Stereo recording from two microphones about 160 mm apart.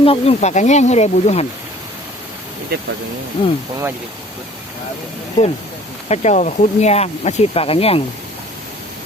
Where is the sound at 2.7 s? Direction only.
75° right (ahead or behind).